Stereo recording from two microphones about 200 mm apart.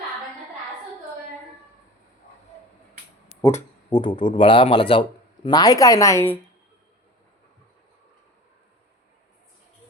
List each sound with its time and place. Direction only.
3.8 s speech: 20° left (ahead or behind)